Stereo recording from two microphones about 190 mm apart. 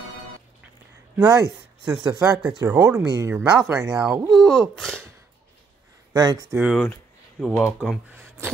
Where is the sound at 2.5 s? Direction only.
15° right (ahead or behind).